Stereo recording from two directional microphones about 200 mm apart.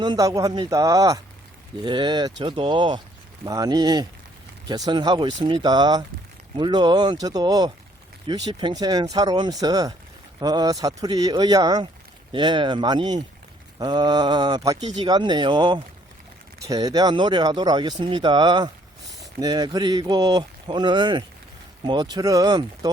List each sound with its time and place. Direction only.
0.0 s speech: 20° right (ahead or behind)